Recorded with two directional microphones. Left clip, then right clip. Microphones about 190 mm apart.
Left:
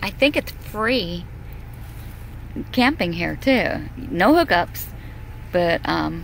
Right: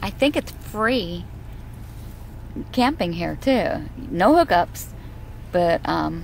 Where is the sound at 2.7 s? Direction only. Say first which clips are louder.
Left 2 dB; centre (ahead or behind).